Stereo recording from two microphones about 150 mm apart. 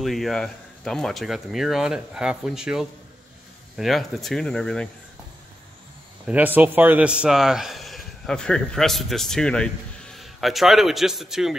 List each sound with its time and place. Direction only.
0.0 s speech: centre (ahead or behind)
6.2 s a man's voice: 10° right (ahead or behind)